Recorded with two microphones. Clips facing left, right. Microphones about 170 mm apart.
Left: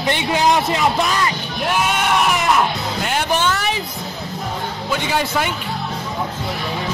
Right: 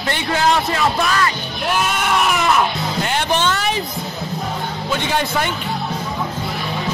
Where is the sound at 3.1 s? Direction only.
5° left (ahead or behind).